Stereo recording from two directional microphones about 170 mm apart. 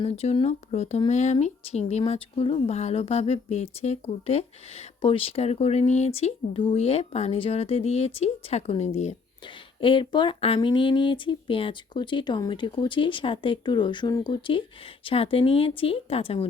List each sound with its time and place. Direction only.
0.0 s speech: 40° left (ahead or behind)
9.8 s speech: 30° left (ahead or behind)